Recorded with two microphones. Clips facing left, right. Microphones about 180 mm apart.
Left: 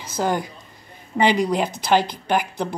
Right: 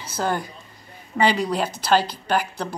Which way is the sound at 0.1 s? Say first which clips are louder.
Left 2 dB; 15° left (ahead or behind).